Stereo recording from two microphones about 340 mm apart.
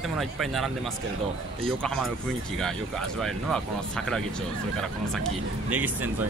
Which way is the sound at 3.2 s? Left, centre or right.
Centre.